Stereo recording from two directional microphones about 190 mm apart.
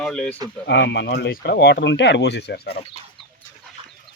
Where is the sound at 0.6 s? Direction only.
65° left (ahead or behind).